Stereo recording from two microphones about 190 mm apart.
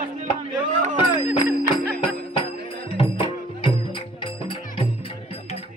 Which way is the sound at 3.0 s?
25° left (ahead or behind).